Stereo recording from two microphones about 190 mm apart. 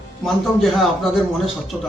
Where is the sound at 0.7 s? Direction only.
Centre (ahead or behind).